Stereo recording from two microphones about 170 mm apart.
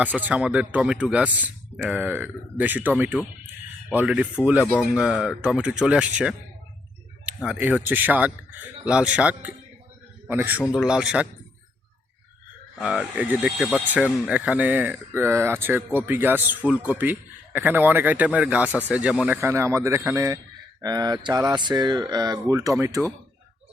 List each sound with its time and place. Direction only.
0.0 s speech: 10° right (ahead or behind)
3.9 s speech: 10° right (ahead or behind)
4.6 s speech: 10° left (ahead or behind)
4.9 s speech: 5° right (ahead or behind)
7.4 s a man's voice: 5° right (ahead or behind)
12.8 s speech: 5° right (ahead or behind)